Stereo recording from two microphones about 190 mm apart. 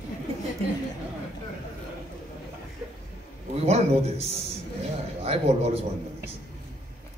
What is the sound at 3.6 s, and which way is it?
A man's voice, 35° right (ahead or behind).